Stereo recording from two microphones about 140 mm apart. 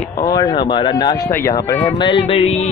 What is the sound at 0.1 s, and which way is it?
Speech, 25° left (ahead or behind).